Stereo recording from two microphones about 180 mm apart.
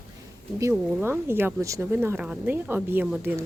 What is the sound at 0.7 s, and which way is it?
Speech, 5° right (ahead or behind).